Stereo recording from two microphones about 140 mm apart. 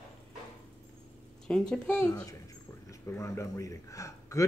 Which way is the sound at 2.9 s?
20° left (ahead or behind).